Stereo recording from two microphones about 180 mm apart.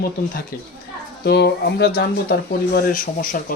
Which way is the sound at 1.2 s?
65° left (ahead or behind).